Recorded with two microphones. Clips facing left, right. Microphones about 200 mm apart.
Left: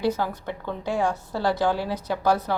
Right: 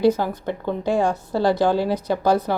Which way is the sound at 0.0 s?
15° right (ahead or behind).